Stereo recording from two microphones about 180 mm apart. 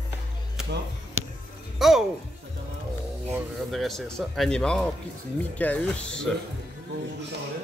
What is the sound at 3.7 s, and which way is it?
A man's voice, centre (ahead or behind).